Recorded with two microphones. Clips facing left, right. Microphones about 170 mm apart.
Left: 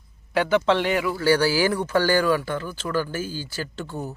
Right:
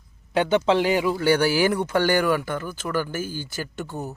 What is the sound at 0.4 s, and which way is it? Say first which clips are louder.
Speech: right 1 dB; 5° right (ahead or behind).